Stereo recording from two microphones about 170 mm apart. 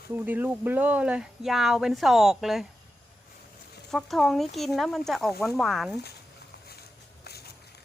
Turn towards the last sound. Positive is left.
turn(degrees=70)  # may be behind; listen again after turning